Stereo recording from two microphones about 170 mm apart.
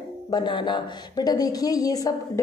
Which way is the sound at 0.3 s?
25° left (ahead or behind).